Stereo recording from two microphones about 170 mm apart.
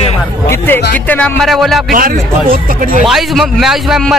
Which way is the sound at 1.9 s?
55° right (ahead or behind).